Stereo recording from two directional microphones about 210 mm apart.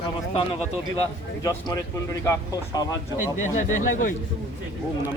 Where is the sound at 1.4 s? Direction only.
20° left (ahead or behind).